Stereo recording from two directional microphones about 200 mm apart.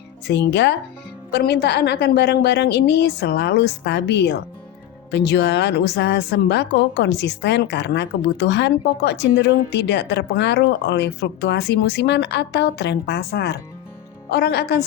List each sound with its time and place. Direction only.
0.3 s a woman's voice: 60° left (ahead or behind)